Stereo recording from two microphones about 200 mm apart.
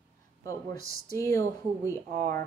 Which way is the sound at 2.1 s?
45° right (ahead or behind).